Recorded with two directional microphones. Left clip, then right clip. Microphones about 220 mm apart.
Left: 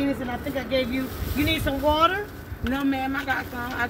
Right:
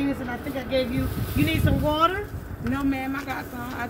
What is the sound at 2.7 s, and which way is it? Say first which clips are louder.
Speech: left 2 dB; 20° right (ahead or behind).